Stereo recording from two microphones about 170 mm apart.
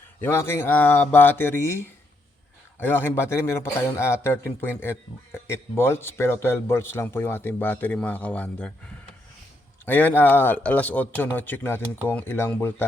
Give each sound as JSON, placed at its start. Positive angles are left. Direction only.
{"t": 0.2, "sound": "a man's voice", "side_deg": 15}
{"t": 9.8, "sound": "a man's voice", "side_deg": 10}